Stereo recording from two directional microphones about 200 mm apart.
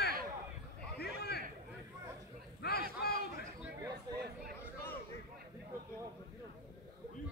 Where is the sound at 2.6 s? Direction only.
50° left (ahead or behind).